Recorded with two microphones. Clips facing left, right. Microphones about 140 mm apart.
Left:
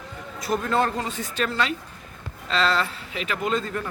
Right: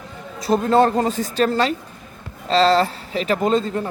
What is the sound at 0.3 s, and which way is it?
Speech, 30° right (ahead or behind).